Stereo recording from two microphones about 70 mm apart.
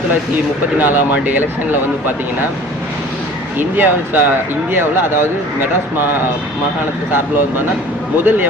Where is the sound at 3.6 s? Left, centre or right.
Right.